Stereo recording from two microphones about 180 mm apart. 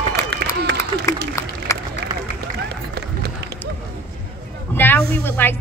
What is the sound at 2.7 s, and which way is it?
Run, 65° right (ahead or behind).